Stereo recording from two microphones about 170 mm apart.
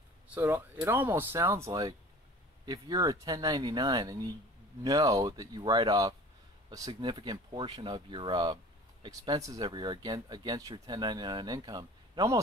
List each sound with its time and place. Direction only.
0.3 s speech: 15° right (ahead or behind)